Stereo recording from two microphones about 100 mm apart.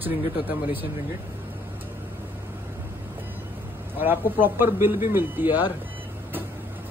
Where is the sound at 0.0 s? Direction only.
20° right (ahead or behind).